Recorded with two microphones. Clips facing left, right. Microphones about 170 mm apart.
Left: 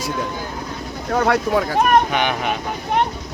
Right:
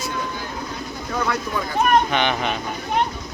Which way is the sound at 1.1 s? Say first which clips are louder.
Left 7 dB; 75° left (ahead or behind).